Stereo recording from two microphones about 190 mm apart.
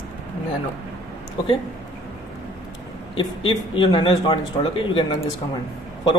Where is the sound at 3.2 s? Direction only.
25° left (ahead or behind).